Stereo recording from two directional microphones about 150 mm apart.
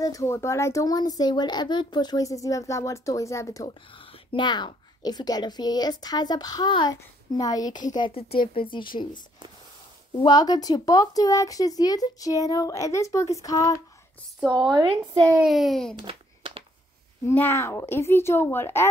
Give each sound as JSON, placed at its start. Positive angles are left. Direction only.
{"t": 0.0, "sound": "a woman's voice", "side_deg": 20}
{"t": 3.9, "sound": "a woman's voice", "side_deg": 35}
{"t": 8.1, "sound": "speech", "side_deg": 40}
{"t": 10.1, "sound": "a woman's voice", "side_deg": 25}
{"t": 14.5, "sound": "a woman's voice", "side_deg": -30}
{"t": 15.4, "sound": "a child's voice", "side_deg": 0}
{"t": 16.0, "sound": "a sound", "side_deg": -35}
{"t": 17.3, "sound": "speech", "side_deg": 15}